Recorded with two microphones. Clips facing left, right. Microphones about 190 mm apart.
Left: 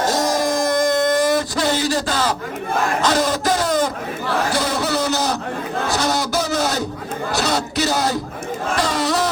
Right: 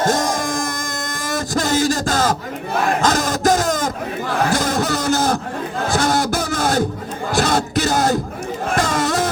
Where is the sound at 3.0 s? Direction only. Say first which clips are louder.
Even; 45° right (ahead or behind).